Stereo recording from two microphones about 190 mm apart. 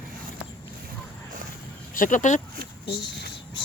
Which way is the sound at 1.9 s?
45° left (ahead or behind).